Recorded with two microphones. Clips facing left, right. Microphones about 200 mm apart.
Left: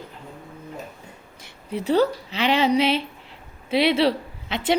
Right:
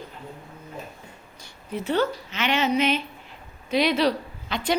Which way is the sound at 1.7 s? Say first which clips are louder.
Left 4 dB; 35° left (ahead or behind).